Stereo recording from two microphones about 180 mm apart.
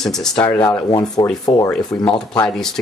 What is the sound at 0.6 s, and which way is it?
Speech, 20° left (ahead or behind).